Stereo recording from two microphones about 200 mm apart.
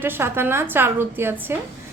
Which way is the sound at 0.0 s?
10° right (ahead or behind).